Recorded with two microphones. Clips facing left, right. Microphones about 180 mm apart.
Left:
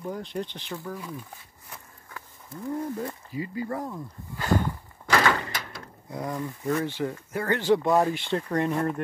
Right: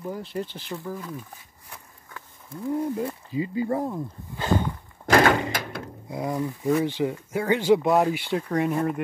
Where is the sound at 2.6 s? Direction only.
5° right (ahead or behind).